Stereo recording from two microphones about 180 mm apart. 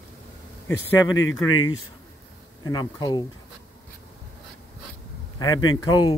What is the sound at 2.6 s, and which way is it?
Speech, 20° left (ahead or behind).